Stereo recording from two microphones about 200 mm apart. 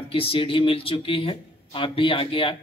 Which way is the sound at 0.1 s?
25° left (ahead or behind).